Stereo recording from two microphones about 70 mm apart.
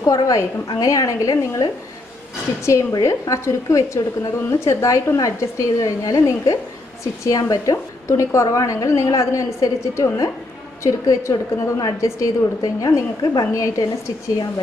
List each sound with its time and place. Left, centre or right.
0.0 s a woman's voice: left
2.6 s a woman's voice: left